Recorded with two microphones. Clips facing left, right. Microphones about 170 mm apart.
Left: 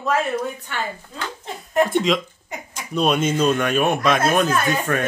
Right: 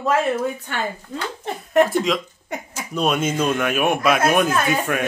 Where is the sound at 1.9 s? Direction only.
Centre (ahead or behind).